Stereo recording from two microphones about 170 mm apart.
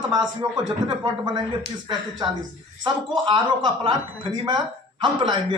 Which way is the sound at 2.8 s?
25° right (ahead or behind).